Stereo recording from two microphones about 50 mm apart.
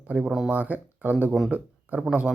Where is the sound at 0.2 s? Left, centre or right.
Centre.